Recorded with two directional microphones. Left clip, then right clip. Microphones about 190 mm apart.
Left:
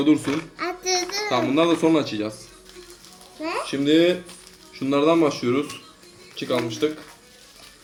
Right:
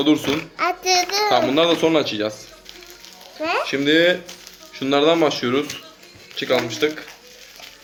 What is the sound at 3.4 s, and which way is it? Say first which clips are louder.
A child's voice: right 4 dB; 5° left (ahead or behind).